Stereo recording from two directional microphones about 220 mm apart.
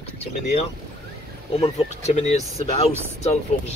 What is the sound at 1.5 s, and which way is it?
Speech, 30° left (ahead or behind).